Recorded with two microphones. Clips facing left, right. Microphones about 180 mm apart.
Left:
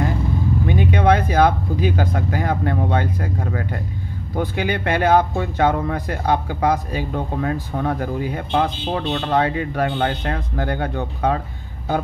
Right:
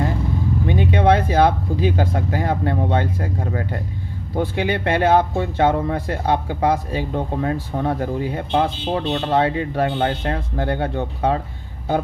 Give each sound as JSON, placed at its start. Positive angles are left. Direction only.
{"t": 0.7, "sound": "speech", "side_deg": -25}